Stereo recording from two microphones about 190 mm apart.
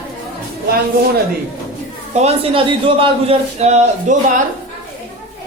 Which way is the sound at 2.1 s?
35° right (ahead or behind).